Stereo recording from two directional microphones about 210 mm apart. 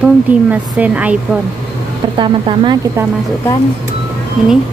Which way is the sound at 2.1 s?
25° right (ahead or behind).